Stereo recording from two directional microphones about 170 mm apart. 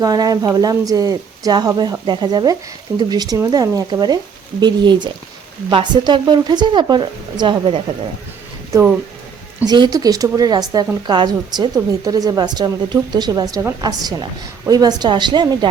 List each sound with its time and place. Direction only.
0.0 s speech: 20° right (ahead or behind)
9.6 s speech: 25° right (ahead or behind)